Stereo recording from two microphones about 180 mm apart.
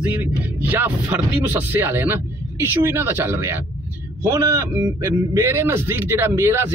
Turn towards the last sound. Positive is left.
turn(degrees=-15)  # may be behind; listen again after turning